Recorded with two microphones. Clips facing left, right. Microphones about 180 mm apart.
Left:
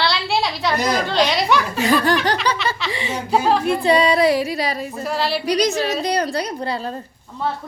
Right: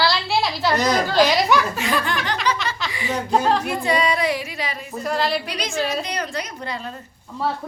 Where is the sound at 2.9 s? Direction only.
25° left (ahead or behind).